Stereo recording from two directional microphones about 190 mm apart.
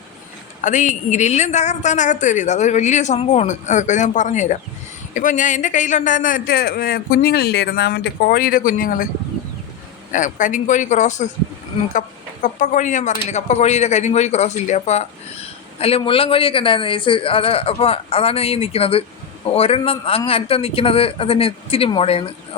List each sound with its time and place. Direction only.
0.6 s a man's voice: 40° left (ahead or behind)
10.1 s speech: 40° left (ahead or behind)